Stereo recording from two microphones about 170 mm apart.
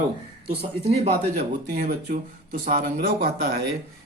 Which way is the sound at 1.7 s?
60° right (ahead or behind).